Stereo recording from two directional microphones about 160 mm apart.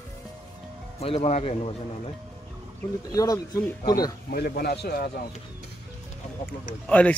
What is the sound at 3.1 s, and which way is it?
Speech, 25° left (ahead or behind).